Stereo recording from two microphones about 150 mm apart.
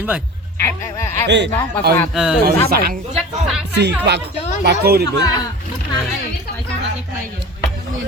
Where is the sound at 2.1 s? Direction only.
5° right (ahead or behind).